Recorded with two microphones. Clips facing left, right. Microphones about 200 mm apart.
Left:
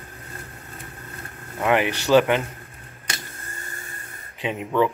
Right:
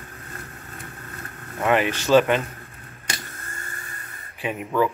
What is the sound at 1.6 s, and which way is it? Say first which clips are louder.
Speech: even; 15° left (ahead or behind).